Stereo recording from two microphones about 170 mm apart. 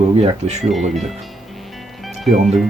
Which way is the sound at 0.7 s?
Centre (ahead or behind).